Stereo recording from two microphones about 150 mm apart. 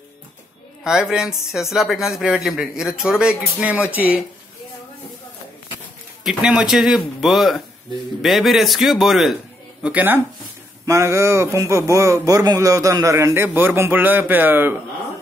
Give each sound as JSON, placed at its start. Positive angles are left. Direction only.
{"t": 0.8, "sound": "a man's voice", "side_deg": -5}
{"t": 6.2, "sound": "a man's voice", "side_deg": -5}